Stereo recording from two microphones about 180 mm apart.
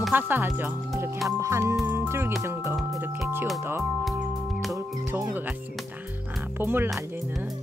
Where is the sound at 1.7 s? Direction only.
10° right (ahead or behind).